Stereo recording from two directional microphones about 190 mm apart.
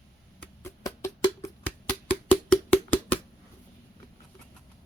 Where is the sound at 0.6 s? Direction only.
15° left (ahead or behind).